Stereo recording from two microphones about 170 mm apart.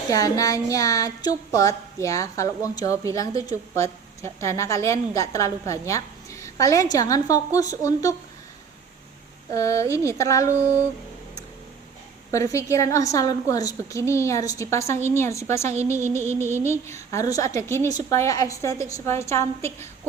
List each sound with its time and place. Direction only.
0.1 s a woman's voice: 20° left (ahead or behind)
9.5 s a woman's voice: 20° left (ahead or behind)
12.3 s a woman's voice: 20° left (ahead or behind)